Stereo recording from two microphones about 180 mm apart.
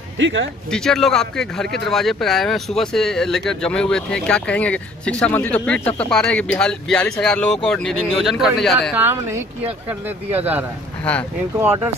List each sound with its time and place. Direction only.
0.2 s speech: 90° right
0.7 s speech: centre (ahead or behind)
8.9 s speech: 15° right (ahead or behind)